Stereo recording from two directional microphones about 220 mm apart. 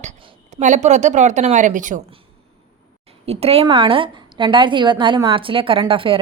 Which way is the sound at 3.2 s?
25° right (ahead or behind).